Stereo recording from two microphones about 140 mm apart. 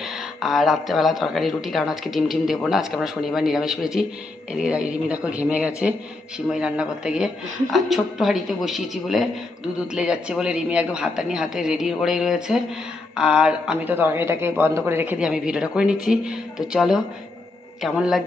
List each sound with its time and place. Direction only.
0.0 s speech: centre (ahead or behind)